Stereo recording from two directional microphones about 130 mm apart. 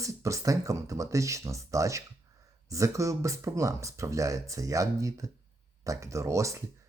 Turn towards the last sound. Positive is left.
turn(degrees=-20)  # may be behind; listen again after turning